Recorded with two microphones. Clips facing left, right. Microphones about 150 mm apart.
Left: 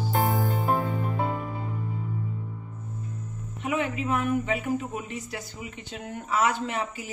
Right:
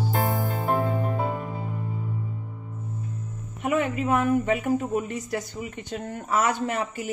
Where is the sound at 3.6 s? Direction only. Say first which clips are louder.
Right 4 dB; 50° right (ahead or behind).